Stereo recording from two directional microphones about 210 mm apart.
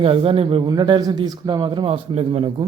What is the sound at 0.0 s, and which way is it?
Speech, 25° right (ahead or behind).